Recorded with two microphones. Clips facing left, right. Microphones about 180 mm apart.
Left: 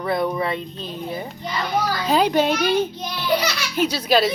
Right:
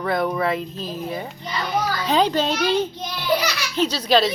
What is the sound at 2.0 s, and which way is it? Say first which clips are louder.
A child's voice: left 2 dB; 10° left (ahead or behind).